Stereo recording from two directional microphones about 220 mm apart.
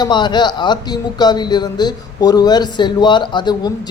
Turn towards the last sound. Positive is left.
turn(degrees=20)  # may be behind; listen again after turning